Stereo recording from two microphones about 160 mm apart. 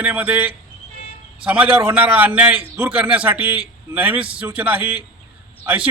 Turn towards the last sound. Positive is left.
turn(degrees=-10)  # may be behind; listen again after turning